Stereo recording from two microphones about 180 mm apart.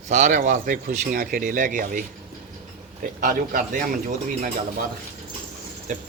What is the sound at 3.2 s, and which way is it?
A man's voice, 45° right (ahead or behind).